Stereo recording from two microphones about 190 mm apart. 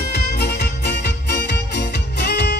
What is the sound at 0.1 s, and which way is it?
Music, 60° left (ahead or behind).